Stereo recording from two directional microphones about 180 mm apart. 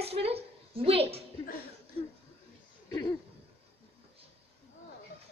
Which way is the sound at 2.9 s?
20° left (ahead or behind).